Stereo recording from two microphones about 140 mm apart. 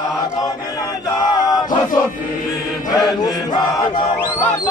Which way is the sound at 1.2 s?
25° left (ahead or behind).